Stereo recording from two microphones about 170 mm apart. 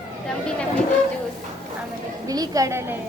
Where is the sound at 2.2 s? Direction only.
20° right (ahead or behind).